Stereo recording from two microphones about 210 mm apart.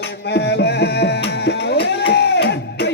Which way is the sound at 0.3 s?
55° left (ahead or behind).